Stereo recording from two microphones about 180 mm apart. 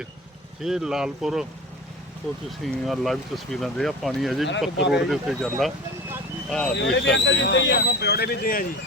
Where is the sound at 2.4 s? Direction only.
Centre (ahead or behind).